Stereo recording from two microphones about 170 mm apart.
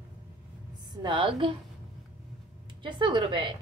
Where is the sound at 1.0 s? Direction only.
30° right (ahead or behind).